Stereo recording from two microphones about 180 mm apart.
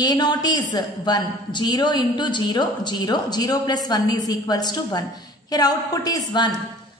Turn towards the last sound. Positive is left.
turn(degrees=25)  # may be behind; listen again after turning